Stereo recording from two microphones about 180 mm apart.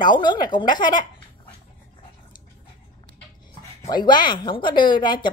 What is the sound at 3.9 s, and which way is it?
Speech, 25° left (ahead or behind).